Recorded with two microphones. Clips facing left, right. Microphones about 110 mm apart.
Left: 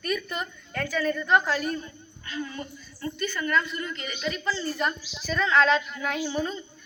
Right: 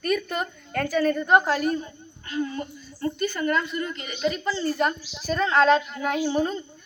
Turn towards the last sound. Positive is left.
turn(degrees=-45)  # may be behind; listen again after turning